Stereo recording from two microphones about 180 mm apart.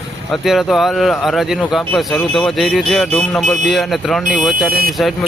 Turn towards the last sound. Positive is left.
turn(degrees=0)  # may be behind; listen again after turning